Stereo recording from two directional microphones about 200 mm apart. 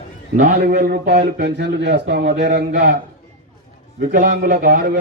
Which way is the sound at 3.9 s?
45° right (ahead or behind).